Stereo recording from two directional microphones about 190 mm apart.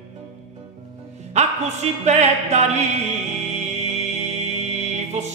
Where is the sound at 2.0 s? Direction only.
35° right (ahead or behind).